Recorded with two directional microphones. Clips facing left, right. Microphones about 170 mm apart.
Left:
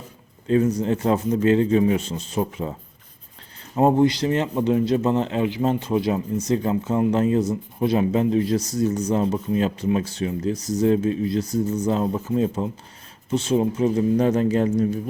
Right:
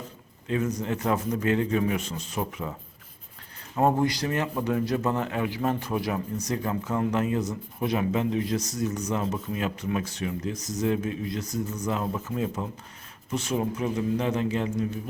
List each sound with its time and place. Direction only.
0.4 s a man's voice: 35° left (ahead or behind)
3.8 s a man's voice: 25° left (ahead or behind); by 14.9 s 40° left (ahead or behind)